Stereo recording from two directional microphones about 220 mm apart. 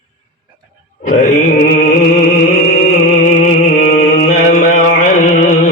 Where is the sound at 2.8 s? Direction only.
35° left (ahead or behind).